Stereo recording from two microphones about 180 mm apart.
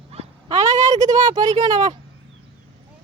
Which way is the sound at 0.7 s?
20° right (ahead or behind).